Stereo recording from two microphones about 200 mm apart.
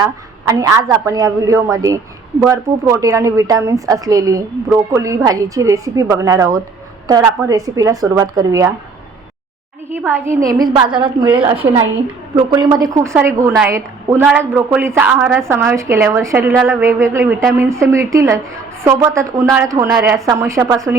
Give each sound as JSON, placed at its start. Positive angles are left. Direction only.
{"t": 0.4, "sound": "a woman's voice", "side_deg": -15}
{"t": 9.9, "sound": "a woman's voice", "side_deg": -10}